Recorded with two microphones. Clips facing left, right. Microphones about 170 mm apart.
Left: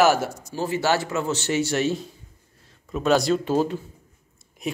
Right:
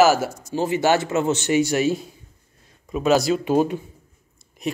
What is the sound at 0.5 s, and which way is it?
Speech, 20° right (ahead or behind).